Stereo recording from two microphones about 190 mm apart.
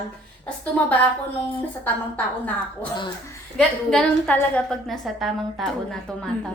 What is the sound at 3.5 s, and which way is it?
A woman's voice, 5° left (ahead or behind).